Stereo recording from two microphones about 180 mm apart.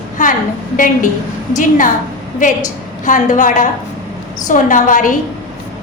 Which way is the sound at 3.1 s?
45° left (ahead or behind).